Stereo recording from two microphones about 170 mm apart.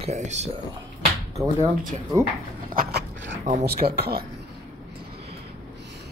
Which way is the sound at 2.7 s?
65° right (ahead or behind).